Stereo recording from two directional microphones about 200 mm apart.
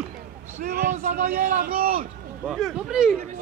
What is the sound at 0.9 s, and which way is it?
A man's voice, 40° right (ahead or behind).